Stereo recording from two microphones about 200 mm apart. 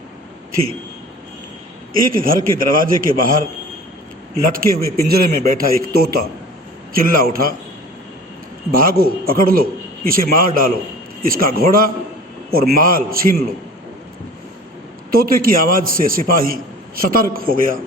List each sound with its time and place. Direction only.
2.0 s a man's voice: 45° right (ahead or behind)
4.5 s a man's voice: 50° right (ahead or behind)
8.7 s a man's voice: 45° right (ahead or behind)
15.1 s a man's voice: 45° right (ahead or behind)